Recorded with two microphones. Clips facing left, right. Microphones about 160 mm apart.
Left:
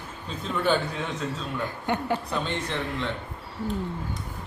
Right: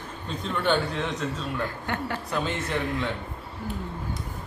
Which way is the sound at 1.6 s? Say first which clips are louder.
Left 2 dB; 15° left (ahead or behind).